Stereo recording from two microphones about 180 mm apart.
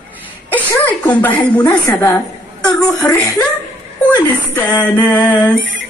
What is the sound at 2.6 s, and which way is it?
Speech, 20° left (ahead or behind).